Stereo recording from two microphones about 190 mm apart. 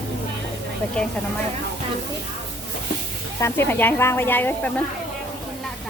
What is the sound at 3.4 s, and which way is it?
Speech, 10° left (ahead or behind).